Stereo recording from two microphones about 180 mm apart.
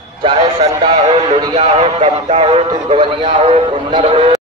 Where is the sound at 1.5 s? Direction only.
40° right (ahead or behind).